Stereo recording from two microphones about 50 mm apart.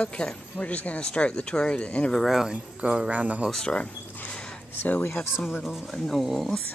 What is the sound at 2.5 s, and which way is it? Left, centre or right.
Speech, right.